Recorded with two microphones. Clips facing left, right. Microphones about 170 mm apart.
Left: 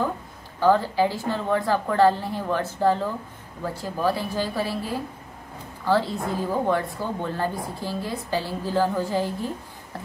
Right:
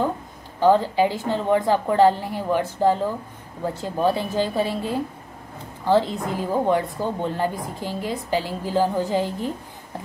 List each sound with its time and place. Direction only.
0.6 s a woman's voice: 20° right (ahead or behind)